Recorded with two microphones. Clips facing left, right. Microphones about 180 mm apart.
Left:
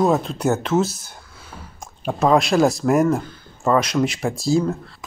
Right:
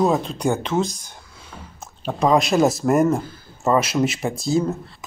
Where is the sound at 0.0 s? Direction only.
Centre (ahead or behind).